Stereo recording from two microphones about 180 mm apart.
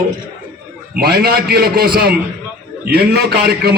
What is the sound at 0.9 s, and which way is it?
A man's voice, 60° right (ahead or behind).